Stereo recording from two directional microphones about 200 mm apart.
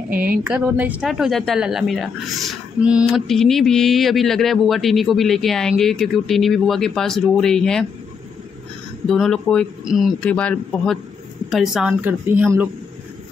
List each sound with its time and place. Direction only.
0.1 s speech: 45° right (ahead or behind)
0.5 s speech: 5° right (ahead or behind)
9.0 s speech: centre (ahead or behind)